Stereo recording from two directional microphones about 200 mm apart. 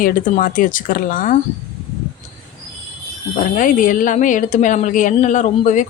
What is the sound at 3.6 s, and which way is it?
A woman's voice, 40° left (ahead or behind).